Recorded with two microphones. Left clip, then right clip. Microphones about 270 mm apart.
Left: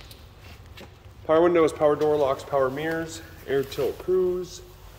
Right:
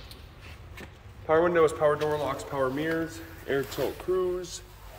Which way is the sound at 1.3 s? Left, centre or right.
Left.